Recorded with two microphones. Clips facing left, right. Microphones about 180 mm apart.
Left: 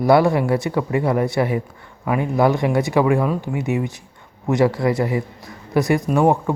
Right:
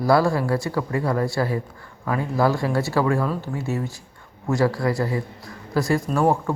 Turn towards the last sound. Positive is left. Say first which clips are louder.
# left 4 dB
turn(degrees=20)  # may be behind; listen again after turning